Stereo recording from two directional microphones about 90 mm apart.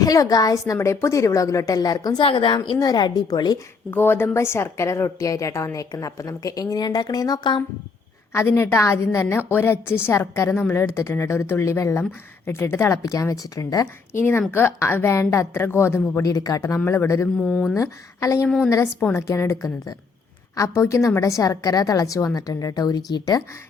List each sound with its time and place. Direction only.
0.0 s a woman's voice: 40° left (ahead or behind)
0.7 s a woman's voice: 30° left (ahead or behind)
2.2 s a woman's voice: 65° left (ahead or behind)
2.7 s a woman's voice: 45° left (ahead or behind)
3.9 s a woman's voice: 25° left (ahead or behind); by 7.6 s 50° left (ahead or behind)
8.3 s speech: 25° left (ahead or behind)
13.0 s a woman's voice: 40° left (ahead or behind)
14.1 s a woman's voice: 25° left (ahead or behind)
17.4 s speech: 10° left (ahead or behind)
17.7 s a woman's voice: 35° left (ahead or behind)
18.4 s a woman's voice: 5° left (ahead or behind)
18.7 s a woman's voice: 30° left (ahead or behind); by 23.4 s 45° left (ahead or behind)